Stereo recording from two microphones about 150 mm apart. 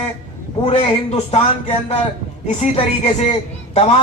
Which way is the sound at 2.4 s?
45° left (ahead or behind).